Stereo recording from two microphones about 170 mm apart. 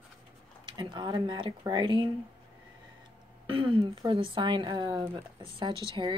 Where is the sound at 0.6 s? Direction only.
25° right (ahead or behind).